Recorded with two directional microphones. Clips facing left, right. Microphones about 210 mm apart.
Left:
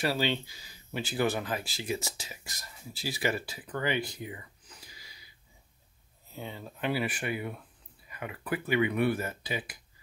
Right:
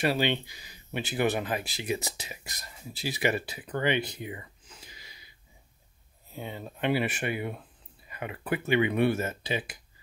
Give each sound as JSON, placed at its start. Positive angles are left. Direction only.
{"t": 0.0, "sound": "speech", "side_deg": -20}
{"t": 6.3, "sound": "speech", "side_deg": -15}